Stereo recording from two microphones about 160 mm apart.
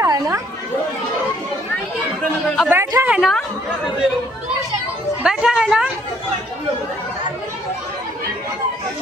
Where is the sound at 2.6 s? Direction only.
15° right (ahead or behind).